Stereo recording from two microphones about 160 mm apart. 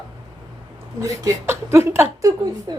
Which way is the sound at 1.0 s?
20° right (ahead or behind).